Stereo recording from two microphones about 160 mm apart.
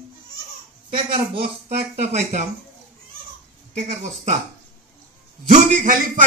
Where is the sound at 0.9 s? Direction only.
35° right (ahead or behind).